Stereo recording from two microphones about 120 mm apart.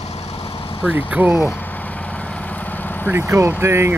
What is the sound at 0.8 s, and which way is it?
Speech, 15° right (ahead or behind).